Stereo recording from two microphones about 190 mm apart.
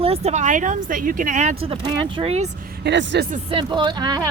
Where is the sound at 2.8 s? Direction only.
70° right (ahead or behind).